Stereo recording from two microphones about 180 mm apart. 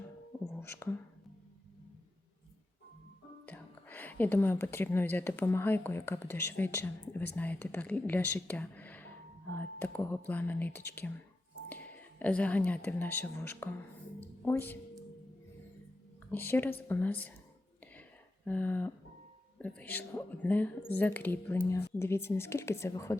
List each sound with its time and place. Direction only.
0.4 s whispering: 10° left (ahead or behind)
3.4 s speech: 10° left (ahead or behind)
14.2 s a sound: 10° left (ahead or behind)
16.3 s speech: 10° left (ahead or behind)
18.4 s speech: 10° left (ahead or behind)